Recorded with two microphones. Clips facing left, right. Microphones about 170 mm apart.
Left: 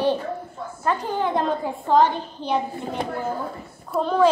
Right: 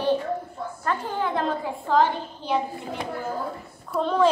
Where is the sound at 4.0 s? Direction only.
5° left (ahead or behind).